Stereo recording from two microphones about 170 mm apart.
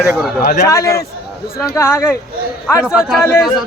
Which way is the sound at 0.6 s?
20° left (ahead or behind).